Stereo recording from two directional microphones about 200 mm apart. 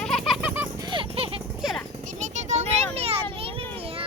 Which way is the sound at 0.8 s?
25° right (ahead or behind).